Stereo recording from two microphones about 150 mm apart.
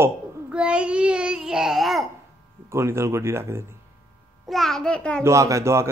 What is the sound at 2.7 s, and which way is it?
Speech, 20° right (ahead or behind).